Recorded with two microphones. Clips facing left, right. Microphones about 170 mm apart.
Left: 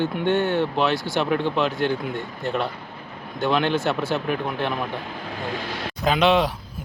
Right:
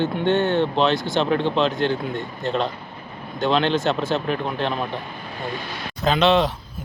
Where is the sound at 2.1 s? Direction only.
15° left (ahead or behind).